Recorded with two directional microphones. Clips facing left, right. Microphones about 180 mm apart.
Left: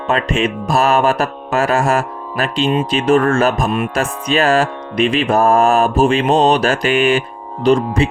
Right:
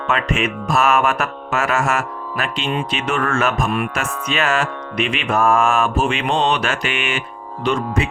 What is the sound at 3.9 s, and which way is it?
Music, 35° left (ahead or behind).